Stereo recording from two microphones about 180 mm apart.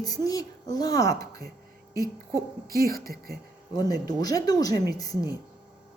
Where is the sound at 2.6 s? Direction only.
55° right (ahead or behind).